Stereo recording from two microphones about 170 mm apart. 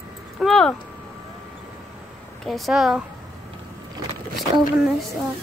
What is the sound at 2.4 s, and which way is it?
Speech, centre (ahead or behind).